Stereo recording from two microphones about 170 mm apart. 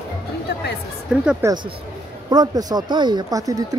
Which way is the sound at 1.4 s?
25° right (ahead or behind).